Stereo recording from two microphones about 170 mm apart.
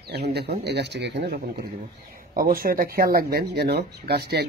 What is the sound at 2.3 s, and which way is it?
Speech, 55° right (ahead or behind).